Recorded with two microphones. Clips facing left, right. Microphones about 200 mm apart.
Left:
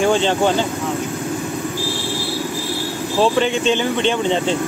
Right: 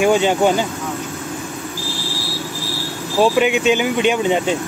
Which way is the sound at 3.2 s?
10° right (ahead or behind).